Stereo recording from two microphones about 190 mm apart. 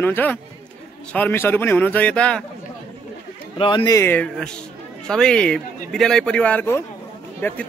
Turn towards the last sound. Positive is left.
turn(degrees=10)  # may be behind; listen again after turning